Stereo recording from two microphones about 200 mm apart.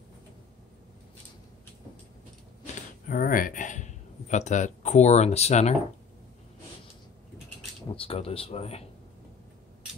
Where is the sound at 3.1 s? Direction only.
45° left (ahead or behind).